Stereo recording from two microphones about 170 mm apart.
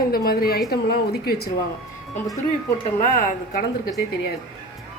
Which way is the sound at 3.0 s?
50° left (ahead or behind).